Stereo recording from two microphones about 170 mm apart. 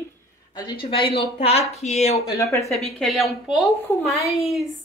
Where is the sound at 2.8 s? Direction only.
Centre (ahead or behind).